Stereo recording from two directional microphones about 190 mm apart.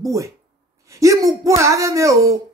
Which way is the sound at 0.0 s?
15° right (ahead or behind).